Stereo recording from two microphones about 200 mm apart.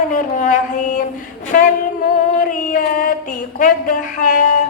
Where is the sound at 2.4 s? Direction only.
40° left (ahead or behind).